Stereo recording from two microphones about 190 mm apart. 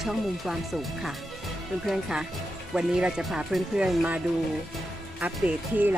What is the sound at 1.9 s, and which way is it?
Speech, 5° right (ahead or behind).